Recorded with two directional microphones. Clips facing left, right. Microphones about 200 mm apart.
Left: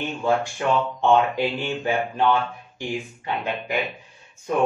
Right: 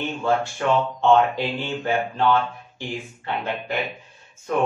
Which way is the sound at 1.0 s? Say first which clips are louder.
Right 1 dB; 15° left (ahead or behind).